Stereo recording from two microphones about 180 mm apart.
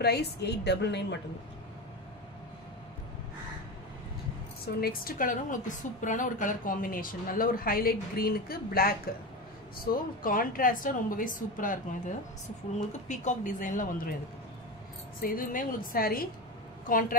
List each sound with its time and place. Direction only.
0.0 s a woman's voice: 65° left (ahead or behind)
4.7 s a woman's voice: 55° left (ahead or behind)
10.2 s a woman's voice: 50° left (ahead or behind)
15.2 s a woman's voice: 50° left (ahead or behind)